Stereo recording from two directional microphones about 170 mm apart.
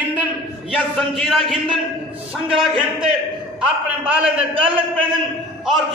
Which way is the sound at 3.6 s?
5° right (ahead or behind).